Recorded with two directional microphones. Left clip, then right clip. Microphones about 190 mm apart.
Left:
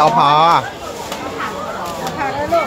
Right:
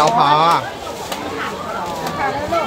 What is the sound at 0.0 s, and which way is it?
Speech, 25° left (ahead or behind).